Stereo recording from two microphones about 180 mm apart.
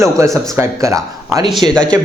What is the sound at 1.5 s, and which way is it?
Speech, centre (ahead or behind).